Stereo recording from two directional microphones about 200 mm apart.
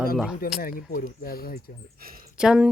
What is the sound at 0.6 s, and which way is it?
Speech, 45° left (ahead or behind).